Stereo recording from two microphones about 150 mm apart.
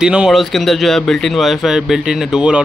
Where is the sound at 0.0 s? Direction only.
5° right (ahead or behind).